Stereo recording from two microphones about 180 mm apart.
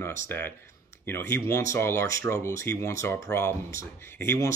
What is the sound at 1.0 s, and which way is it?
Speech, 15° left (ahead or behind).